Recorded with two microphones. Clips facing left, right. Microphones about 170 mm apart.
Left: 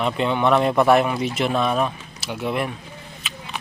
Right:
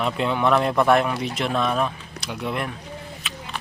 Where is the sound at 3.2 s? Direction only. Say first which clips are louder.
Right 1 dB; centre (ahead or behind).